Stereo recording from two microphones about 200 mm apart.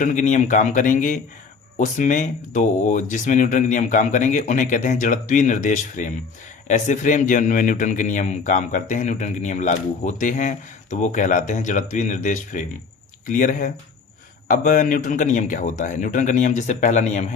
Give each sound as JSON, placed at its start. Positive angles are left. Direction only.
{"t": 0.0, "sound": "a man's voice", "side_deg": 40}